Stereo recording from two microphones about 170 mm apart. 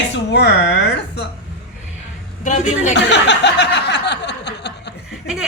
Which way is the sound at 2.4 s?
45° left (ahead or behind).